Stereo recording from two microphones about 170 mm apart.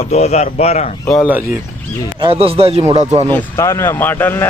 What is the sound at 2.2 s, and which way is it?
Speech, 35° right (ahead or behind).